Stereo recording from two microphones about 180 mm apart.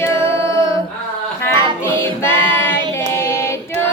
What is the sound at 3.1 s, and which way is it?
Child singing, 15° left (ahead or behind).